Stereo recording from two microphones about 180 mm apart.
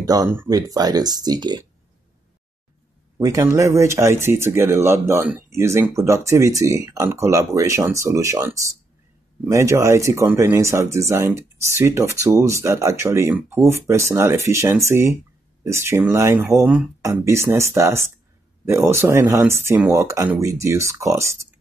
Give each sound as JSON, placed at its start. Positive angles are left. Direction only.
{"t": 0.0, "sound": "speech", "side_deg": -20}
{"t": 3.2, "sound": "speech", "side_deg": -20}